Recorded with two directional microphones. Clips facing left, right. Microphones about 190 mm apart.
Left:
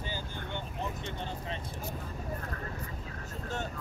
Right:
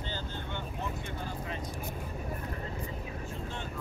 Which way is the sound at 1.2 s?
30° left (ahead or behind).